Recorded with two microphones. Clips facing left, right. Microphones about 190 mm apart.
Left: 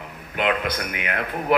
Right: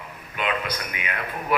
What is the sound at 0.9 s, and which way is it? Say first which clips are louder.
Speech: left 4 dB; 65° left (ahead or behind).